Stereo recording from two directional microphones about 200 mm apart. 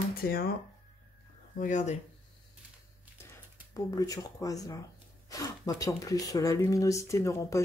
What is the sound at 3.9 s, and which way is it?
Speech, 15° left (ahead or behind).